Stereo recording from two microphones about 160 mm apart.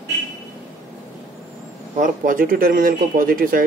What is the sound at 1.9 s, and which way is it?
Speech, 55° right (ahead or behind).